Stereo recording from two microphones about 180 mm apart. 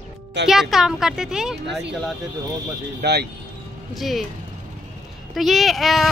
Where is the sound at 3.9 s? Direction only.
Centre (ahead or behind).